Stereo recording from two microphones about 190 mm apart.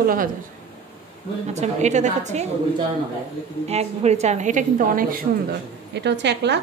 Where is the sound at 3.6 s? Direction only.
35° right (ahead or behind).